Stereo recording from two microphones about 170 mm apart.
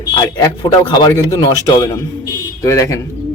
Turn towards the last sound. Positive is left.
turn(degrees=15)  # may be behind; listen again after turning